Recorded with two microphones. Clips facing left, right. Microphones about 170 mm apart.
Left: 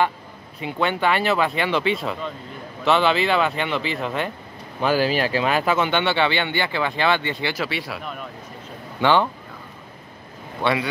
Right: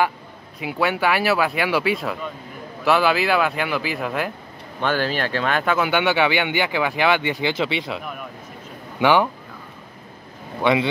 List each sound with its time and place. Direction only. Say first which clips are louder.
0.6 s speech: right 1 dB; 5° right (ahead or behind)
4.7 s speech: left 2 dB; 10° left (ahead or behind); by 8.0 s 20° right (ahead or behind)
8.0 s speech: even; 10° right (ahead or behind)
10.6 s speech: right 3 dB; 20° right (ahead or behind)